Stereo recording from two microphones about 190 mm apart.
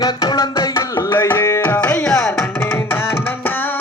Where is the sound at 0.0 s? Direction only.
20° left (ahead or behind).